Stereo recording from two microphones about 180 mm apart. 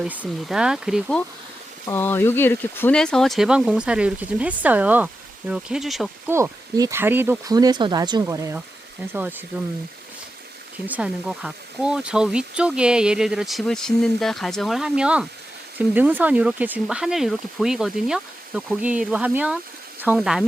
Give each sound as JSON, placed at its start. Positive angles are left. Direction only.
{"t": 0.0, "sound": "speech", "side_deg": -5}
{"t": 1.9, "sound": "speech", "side_deg": 10}
{"t": 6.3, "sound": "speech", "side_deg": -20}
{"t": 10.8, "sound": "speech", "side_deg": -5}